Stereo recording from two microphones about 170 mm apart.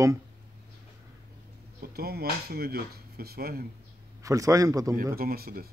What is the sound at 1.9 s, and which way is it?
Speech, 65° right (ahead or behind).